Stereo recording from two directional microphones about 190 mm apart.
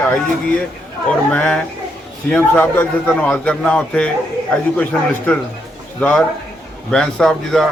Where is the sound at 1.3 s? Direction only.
5° left (ahead or behind).